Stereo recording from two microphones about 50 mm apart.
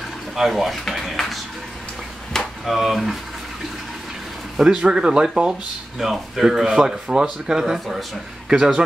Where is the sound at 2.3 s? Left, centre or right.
Centre.